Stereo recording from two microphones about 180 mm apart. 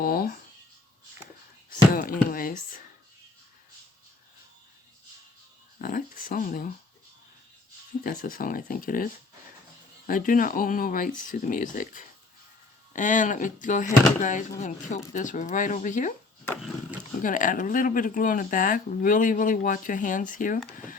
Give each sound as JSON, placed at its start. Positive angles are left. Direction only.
{"t": 0.0, "sound": "writing", "side_deg": 55}
{"t": 1.9, "sound": "speech", "side_deg": 50}
{"t": 5.8, "sound": "speech", "side_deg": 50}
{"t": 8.0, "sound": "speech", "side_deg": 50}
{"t": 17.2, "sound": "speech", "side_deg": 45}